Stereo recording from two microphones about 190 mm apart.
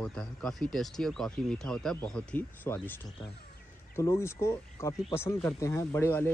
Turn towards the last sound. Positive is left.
turn(degrees=15)  # may be behind; listen again after turning